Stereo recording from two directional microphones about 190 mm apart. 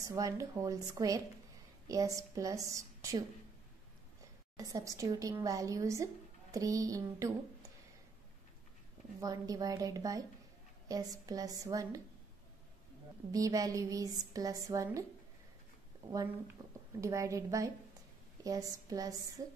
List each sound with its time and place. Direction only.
0.1 s a woman's voice: 15° right (ahead or behind)
4.6 s a woman's voice: 20° right (ahead or behind)
9.2 s a woman's voice: 20° right (ahead or behind)
13.3 s a woman's voice: 20° right (ahead or behind)
16.6 s a sound: 15° right (ahead or behind)
17.0 s a woman's voice: 15° right (ahead or behind)